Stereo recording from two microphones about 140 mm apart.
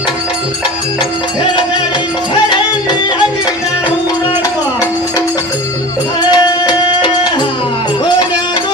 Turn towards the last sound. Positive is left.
turn(degrees=30)  # may be behind; listen again after turning